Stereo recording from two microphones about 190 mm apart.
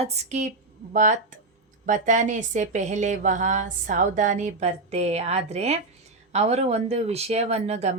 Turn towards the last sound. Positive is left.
turn(degrees=-35)  # may be behind; listen again after turning